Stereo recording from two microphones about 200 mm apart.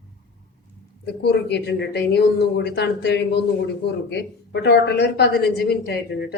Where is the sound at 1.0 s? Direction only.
55° left (ahead or behind).